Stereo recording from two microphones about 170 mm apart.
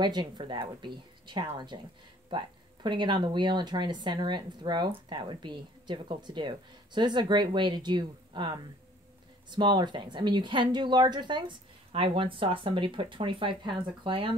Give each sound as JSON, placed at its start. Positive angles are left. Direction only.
{"t": 0.0, "sound": "speech", "side_deg": -25}
{"t": 9.6, "sound": "speech", "side_deg": -25}